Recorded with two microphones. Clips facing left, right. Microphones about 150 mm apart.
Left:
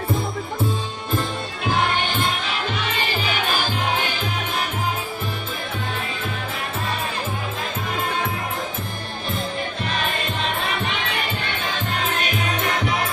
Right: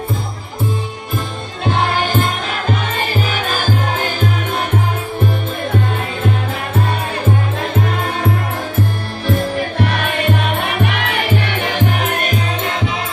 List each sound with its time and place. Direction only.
2.0 s music: 45° right (ahead or behind)
9.3 s music: 65° right (ahead or behind)
12.6 s music: 25° right (ahead or behind)